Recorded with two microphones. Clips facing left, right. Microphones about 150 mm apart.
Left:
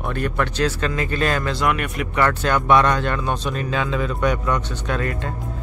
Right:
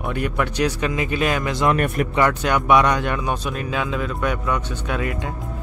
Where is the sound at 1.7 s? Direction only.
45° right (ahead or behind).